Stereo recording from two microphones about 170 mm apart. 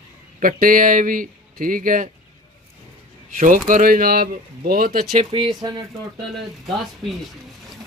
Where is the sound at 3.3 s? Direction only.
50° right (ahead or behind).